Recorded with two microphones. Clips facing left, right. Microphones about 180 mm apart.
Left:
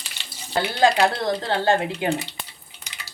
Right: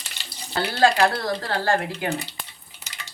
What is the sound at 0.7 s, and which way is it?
Speech, 20° left (ahead or behind).